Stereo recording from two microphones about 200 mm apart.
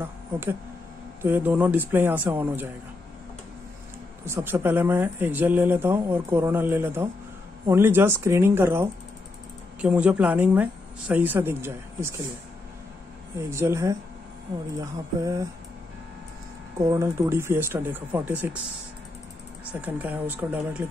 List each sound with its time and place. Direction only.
0.0 s speech: 10° right (ahead or behind)
4.3 s speech: 10° right (ahead or behind)
13.4 s speech: 15° right (ahead or behind)
16.7 s speech: 15° right (ahead or behind)
19.8 s speech: 10° right (ahead or behind)